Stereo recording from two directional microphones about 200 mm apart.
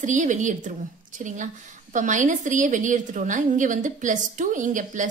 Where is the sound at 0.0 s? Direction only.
40° right (ahead or behind).